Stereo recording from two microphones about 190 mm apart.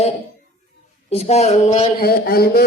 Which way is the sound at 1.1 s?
35° left (ahead or behind).